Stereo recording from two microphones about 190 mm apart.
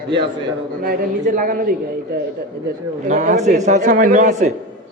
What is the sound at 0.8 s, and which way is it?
A man's voice, 50° right (ahead or behind).